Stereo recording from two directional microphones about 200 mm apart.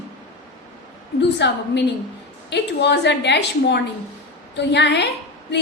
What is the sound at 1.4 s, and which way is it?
A woman's voice, 60° left (ahead or behind).